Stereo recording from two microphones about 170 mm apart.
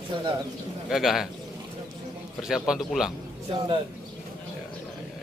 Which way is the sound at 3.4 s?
30° right (ahead or behind).